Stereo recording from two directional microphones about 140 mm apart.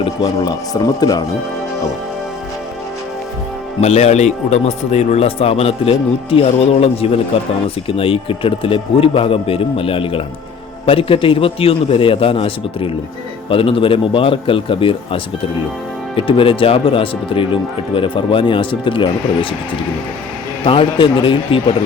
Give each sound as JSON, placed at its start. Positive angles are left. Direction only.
{"t": 0.0, "sound": "speech", "side_deg": 30}
{"t": 3.8, "sound": "speech", "side_deg": 50}
{"t": 20.7, "sound": "speech", "side_deg": 40}